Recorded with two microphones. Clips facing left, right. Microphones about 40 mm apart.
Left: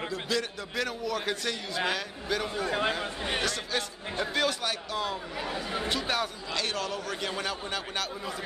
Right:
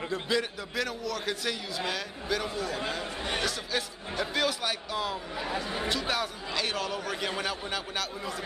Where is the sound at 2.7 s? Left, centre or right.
Left.